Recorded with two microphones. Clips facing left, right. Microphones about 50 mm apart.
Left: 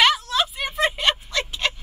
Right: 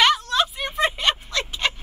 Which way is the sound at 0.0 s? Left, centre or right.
Centre.